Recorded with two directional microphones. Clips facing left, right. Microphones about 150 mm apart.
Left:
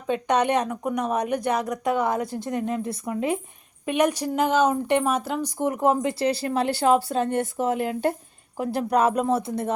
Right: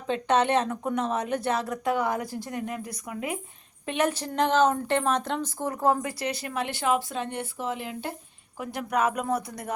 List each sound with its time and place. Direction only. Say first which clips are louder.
0.1 s a woman's voice: left 1 dB; 15° left (ahead or behind)
3.8 s a woman's voice: left 5 dB; 15° left (ahead or behind); by 8.1 s 50° left (ahead or behind)
8.5 s speech: left 6 dB; 35° left (ahead or behind)